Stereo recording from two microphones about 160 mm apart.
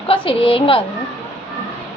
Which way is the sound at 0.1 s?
35° left (ahead or behind).